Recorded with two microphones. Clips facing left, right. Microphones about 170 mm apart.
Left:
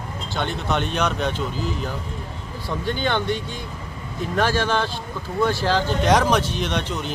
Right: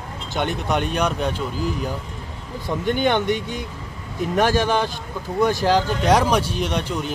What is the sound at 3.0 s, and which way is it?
Speech, 15° right (ahead or behind).